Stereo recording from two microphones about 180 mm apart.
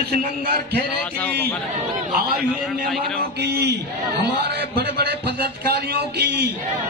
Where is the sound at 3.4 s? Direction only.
65° right (ahead or behind).